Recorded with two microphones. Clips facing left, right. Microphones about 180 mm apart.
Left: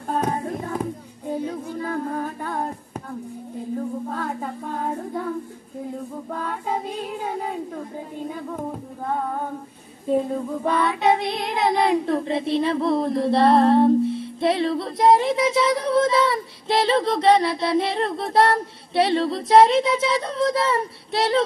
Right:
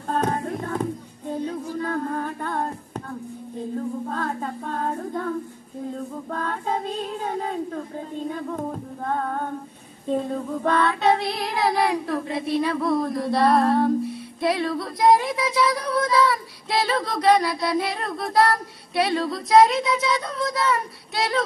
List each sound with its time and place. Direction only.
0.1 s music: 10° left (ahead or behind)
4.1 s female singing: 10° left (ahead or behind)
6.3 s child singing: 10° left (ahead or behind)
8.3 s music: 5° left (ahead or behind)
10.0 s child singing: 10° left (ahead or behind); by 21.5 s 30° left (ahead or behind)